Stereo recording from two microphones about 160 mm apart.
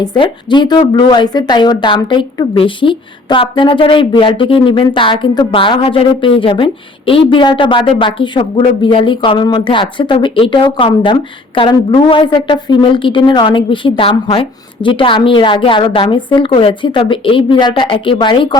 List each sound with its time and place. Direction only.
0.0 s a woman's voice: 30° left (ahead or behind)